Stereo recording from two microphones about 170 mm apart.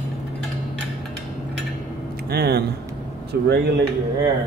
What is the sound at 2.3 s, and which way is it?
Speech, 70° right (ahead or behind).